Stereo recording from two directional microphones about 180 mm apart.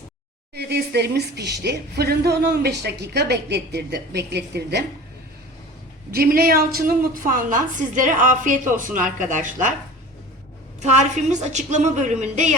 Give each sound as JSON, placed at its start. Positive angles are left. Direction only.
{"t": 0.5, "sound": "a woman's voice", "side_deg": -65}
{"t": 6.1, "sound": "a woman's voice", "side_deg": -55}
{"t": 10.8, "sound": "a woman's voice", "side_deg": -40}